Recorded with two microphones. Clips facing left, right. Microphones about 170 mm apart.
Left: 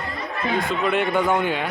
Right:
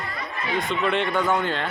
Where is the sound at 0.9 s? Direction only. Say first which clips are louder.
Left 3 dB; 10° left (ahead or behind).